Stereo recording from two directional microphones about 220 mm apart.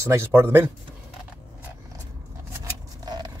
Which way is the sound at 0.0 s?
10° right (ahead or behind).